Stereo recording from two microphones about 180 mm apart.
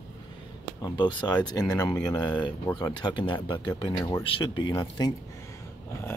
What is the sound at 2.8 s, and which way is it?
Speech, 25° left (ahead or behind).